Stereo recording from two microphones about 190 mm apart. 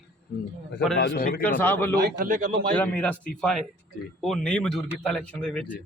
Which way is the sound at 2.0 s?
50° right (ahead or behind).